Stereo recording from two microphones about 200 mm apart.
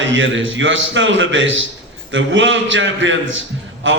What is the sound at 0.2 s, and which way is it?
A man's voice, 70° right (ahead or behind).